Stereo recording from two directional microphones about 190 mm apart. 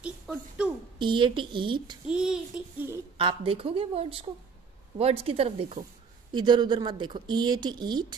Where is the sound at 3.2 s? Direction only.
30° right (ahead or behind).